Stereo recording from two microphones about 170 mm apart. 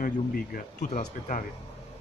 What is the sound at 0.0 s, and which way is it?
Speech, 50° left (ahead or behind).